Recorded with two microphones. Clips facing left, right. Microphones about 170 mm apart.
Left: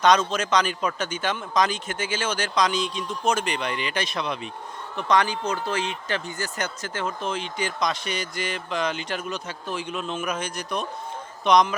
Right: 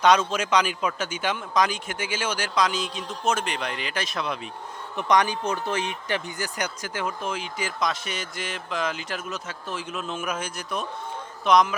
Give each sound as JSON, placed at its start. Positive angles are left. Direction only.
{"t": 0.0, "sound": "a man's voice", "side_deg": -10}
{"t": 4.9, "sound": "a man's voice", "side_deg": -15}